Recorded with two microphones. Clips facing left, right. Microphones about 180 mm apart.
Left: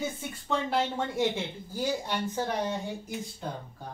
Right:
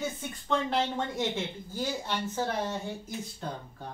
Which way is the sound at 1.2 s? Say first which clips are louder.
Left 3 dB; 10° left (ahead or behind).